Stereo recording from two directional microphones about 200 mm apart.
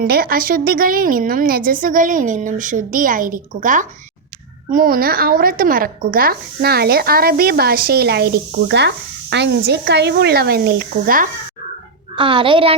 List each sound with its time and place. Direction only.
0.0 s a woman's voice: 45° right (ahead or behind)
12.1 s a child's voice: 25° right (ahead or behind)